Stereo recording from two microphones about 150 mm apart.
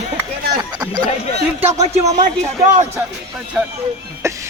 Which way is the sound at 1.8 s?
50° right (ahead or behind).